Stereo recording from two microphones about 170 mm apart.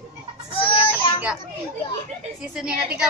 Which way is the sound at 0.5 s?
30° left (ahead or behind).